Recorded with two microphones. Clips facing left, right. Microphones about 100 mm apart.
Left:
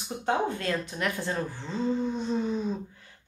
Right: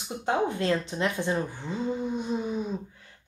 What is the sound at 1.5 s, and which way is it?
Speech, 10° right (ahead or behind).